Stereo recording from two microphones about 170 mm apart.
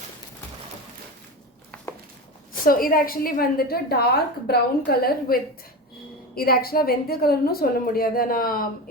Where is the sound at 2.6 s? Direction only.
60° left (ahead or behind).